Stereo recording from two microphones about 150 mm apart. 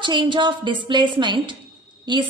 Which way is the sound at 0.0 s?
30° right (ahead or behind).